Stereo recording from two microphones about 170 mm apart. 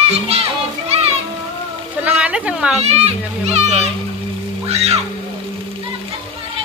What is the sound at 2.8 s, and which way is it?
A child's voice, 40° right (ahead or behind).